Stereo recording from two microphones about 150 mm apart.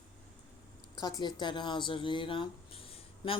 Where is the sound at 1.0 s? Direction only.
30° left (ahead or behind).